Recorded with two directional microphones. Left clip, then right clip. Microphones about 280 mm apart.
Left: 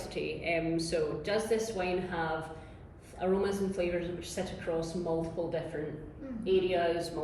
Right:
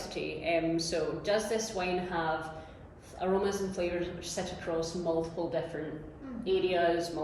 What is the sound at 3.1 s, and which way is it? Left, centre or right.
A woman's voice, centre.